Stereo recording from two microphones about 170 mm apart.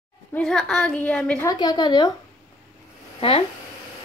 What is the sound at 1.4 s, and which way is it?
Speech, 25° left (ahead or behind).